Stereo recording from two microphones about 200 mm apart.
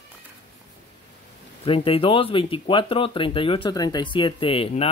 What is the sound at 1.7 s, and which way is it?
Speech, 30° left (ahead or behind).